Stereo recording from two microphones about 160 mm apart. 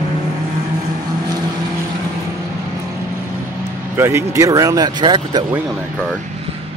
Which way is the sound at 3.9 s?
15° right (ahead or behind).